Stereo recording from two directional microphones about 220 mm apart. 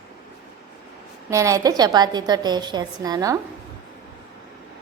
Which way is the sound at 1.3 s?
15° right (ahead or behind).